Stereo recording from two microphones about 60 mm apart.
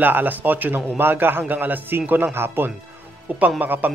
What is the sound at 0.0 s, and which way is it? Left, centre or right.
A man's voice, right.